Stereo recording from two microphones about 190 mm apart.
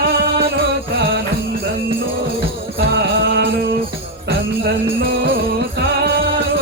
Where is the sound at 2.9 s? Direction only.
60° right (ahead or behind).